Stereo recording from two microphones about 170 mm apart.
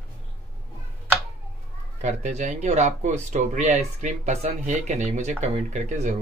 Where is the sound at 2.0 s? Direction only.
45° right (ahead or behind).